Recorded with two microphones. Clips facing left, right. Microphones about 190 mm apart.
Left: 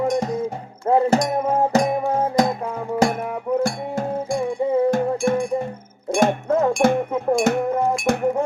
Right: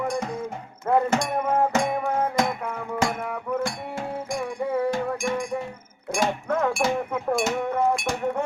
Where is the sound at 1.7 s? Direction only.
35° left (ahead or behind).